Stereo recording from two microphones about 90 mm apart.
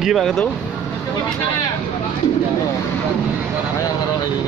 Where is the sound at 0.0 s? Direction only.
Centre (ahead or behind).